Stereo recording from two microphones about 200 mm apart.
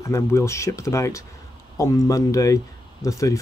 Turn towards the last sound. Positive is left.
turn(degrees=15)  # may be behind; listen again after turning